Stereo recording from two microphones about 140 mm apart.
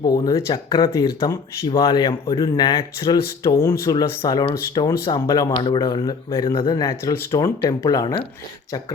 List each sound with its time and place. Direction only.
0.0 s speech: 25° left (ahead or behind)